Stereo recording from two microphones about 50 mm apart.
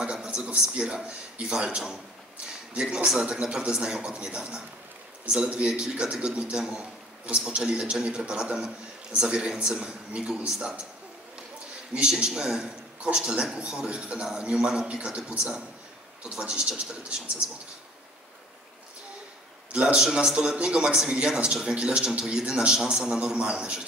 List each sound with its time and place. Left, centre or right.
0.0 s a man's voice: centre
2.8 s speech: centre
9.7 s speech: centre
11.9 s a man's voice: centre
19.7 s speech: centre
23.1 s a man's voice: right